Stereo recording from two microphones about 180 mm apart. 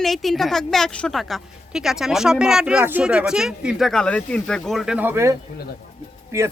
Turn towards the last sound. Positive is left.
turn(degrees=-15)  # may be behind; listen again after turning